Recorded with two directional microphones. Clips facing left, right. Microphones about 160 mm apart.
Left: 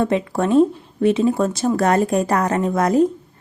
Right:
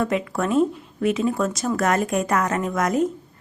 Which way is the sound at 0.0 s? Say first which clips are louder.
Left 4 dB; 30° left (ahead or behind).